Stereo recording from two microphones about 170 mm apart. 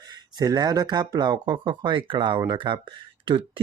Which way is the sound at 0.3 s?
20° right (ahead or behind).